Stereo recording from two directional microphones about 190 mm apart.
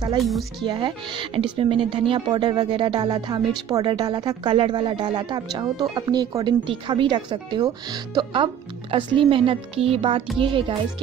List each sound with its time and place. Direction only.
0.2 s a woman's voice: centre (ahead or behind)
0.7 s speech: 25° right (ahead or behind)